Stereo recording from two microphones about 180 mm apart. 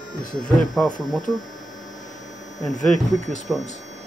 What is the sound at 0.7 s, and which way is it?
Speech, 5° left (ahead or behind).